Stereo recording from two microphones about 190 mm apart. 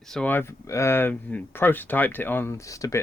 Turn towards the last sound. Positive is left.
turn(degrees=15)  # may be behind; listen again after turning